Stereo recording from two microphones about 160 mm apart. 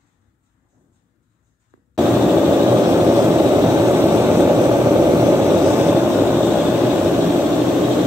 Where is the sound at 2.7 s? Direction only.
15° right (ahead or behind).